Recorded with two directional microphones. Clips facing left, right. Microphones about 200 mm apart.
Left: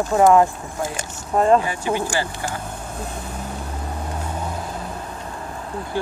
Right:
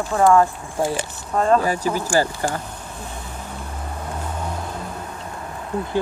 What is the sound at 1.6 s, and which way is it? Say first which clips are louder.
Speech: right 1 dB; 40° right (ahead or behind).